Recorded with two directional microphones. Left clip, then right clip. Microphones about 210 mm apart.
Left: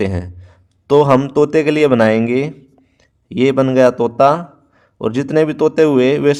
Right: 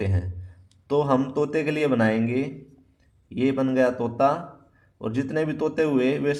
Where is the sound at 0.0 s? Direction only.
45° left (ahead or behind).